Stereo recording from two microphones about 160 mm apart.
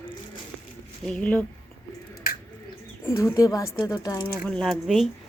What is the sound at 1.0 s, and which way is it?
Speech, 5° left (ahead or behind).